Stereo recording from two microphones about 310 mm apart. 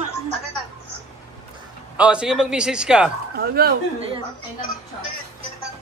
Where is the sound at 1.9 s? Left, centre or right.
Centre.